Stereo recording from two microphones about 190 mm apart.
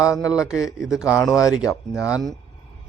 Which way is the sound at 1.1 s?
Centre (ahead or behind).